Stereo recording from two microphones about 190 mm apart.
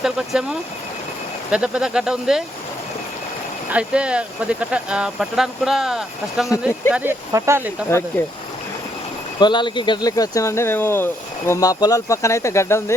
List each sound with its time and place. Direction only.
0.0 s speech: 5° right (ahead or behind)
1.5 s speech: 5° right (ahead or behind)
3.7 s speech: 5° right (ahead or behind)
6.5 s speech: 15° left (ahead or behind)
6.9 s speech: 10° right (ahead or behind)
9.4 s speech: 25° left (ahead or behind)